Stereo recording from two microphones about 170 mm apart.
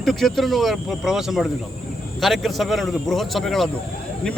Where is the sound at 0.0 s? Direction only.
Centre (ahead or behind).